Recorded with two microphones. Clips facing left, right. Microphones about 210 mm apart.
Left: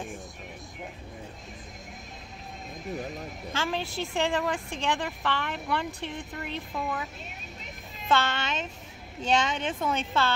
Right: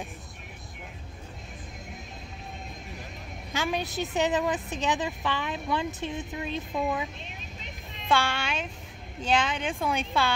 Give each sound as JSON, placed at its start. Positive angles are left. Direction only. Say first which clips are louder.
{"t": 3.5, "sound": "a woman's voice", "louder": "right 2 dB", "side_deg": -15}
{"t": 8.1, "sound": "a woman's voice", "louder": "even", "side_deg": -10}